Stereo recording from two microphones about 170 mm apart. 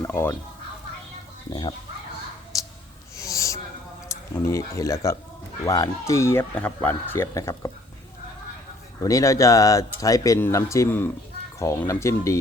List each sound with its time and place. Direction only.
0.0 s speech: 15° left (ahead or behind)
2.5 s a sound: 20° left (ahead or behind)
4.4 s speech: 20° left (ahead or behind)
9.0 s speech: 20° left (ahead or behind)